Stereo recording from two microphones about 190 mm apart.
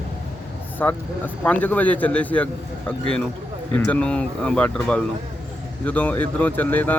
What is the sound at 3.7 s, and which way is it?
Speech, 5° left (ahead or behind).